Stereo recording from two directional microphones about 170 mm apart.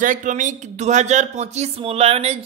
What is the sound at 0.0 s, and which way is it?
Speech, 50° right (ahead or behind).